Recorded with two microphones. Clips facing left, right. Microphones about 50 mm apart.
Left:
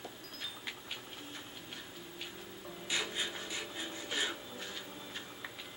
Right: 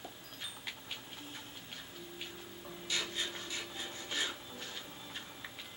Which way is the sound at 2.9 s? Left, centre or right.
Centre.